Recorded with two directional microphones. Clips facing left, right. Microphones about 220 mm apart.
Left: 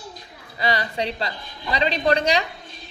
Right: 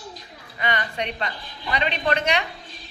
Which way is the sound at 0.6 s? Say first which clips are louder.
Left 3 dB; 35° left (ahead or behind).